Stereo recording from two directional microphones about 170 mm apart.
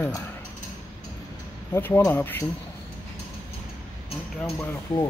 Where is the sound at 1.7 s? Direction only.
15° left (ahead or behind).